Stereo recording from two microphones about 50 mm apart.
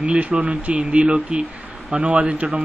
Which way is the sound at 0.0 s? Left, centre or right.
Right.